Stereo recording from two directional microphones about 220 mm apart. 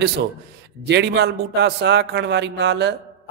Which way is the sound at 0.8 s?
50° right (ahead or behind).